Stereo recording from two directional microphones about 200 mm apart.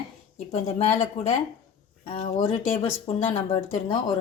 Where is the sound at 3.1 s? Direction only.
30° left (ahead or behind).